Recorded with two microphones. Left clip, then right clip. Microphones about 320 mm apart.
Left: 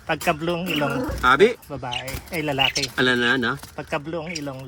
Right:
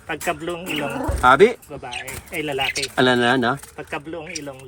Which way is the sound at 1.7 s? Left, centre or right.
Left.